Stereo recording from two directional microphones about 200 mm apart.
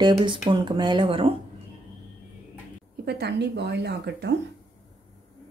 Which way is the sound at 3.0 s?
55° right (ahead or behind).